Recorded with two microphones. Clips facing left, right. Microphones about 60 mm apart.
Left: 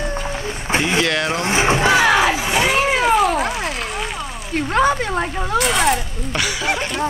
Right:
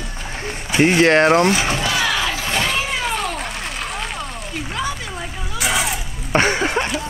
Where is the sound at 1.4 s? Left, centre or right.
Left.